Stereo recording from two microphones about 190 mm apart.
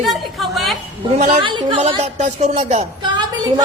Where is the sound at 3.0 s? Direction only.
25° right (ahead or behind).